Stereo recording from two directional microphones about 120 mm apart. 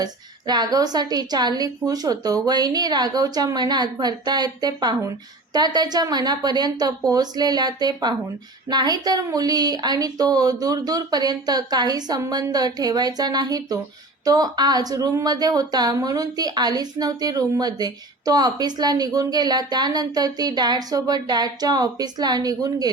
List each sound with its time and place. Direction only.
0.0 s a woman's voice: 35° right (ahead or behind)